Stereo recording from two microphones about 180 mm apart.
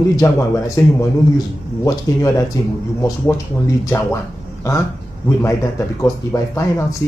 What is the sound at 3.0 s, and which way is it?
Speech, 20° left (ahead or behind).